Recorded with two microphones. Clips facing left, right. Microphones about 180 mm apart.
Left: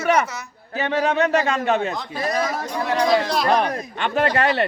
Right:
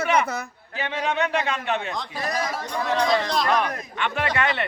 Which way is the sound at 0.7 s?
45° left (ahead or behind).